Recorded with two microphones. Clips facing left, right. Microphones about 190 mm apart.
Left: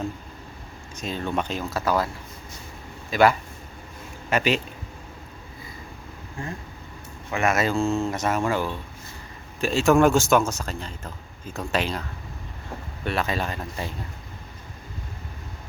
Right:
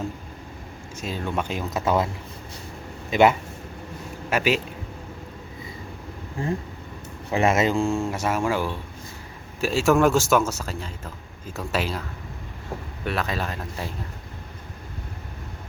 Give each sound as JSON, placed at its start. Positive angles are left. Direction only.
{"t": 0.9, "sound": "a man's voice", "side_deg": -5}
{"t": 1.8, "sound": "speech", "side_deg": -25}
{"t": 3.1, "sound": "speech", "side_deg": -20}
{"t": 4.3, "sound": "a man's voice", "side_deg": -5}
{"t": 6.4, "sound": "a man's voice", "side_deg": -35}
{"t": 13.1, "sound": "speech", "side_deg": 0}